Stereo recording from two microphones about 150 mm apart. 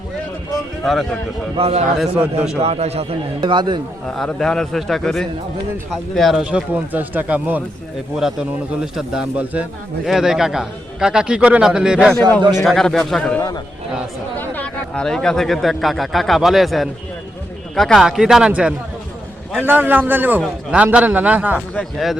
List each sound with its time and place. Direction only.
1.5 s a man's voice: 40° right (ahead or behind)
2.0 s a man's voice: 5° right (ahead or behind)
2.6 s a man's voice: 45° right (ahead or behind)
4.1 s a man's voice: 5° left (ahead or behind)
21.8 s a man's voice: centre (ahead or behind)